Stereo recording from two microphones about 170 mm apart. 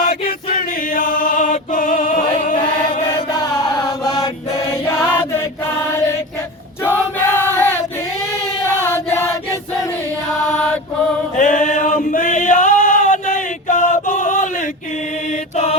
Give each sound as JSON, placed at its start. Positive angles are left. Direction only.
{"t": 0.0, "sound": "chant", "side_deg": 60}
{"t": 3.2, "sound": "chant", "side_deg": 25}
{"t": 6.8, "sound": "choir", "side_deg": 15}
{"t": 8.8, "sound": "choir", "side_deg": 15}
{"t": 11.3, "sound": "chant", "side_deg": 45}
{"t": 15.3, "sound": "mantra", "side_deg": 40}